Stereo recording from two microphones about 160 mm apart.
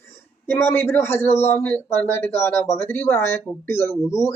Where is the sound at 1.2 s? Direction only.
40° left (ahead or behind).